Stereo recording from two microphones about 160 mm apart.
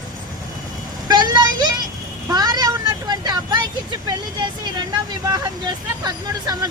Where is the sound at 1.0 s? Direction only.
25° right (ahead or behind).